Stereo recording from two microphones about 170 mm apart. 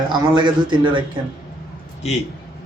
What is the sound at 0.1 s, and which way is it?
Speech, 25° right (ahead or behind).